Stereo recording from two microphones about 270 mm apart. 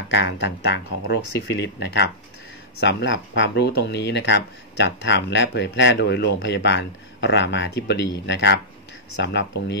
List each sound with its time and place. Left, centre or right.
0.1 s speech: left